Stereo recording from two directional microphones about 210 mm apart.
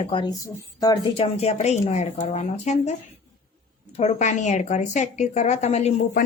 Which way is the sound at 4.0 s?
35° left (ahead or behind).